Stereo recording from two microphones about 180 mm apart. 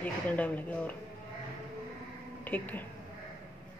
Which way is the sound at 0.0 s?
10° left (ahead or behind).